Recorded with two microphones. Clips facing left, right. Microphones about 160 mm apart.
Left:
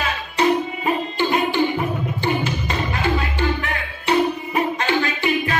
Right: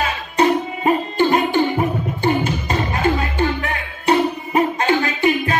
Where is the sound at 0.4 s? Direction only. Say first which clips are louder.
Right 2 dB; 45° right (ahead or behind).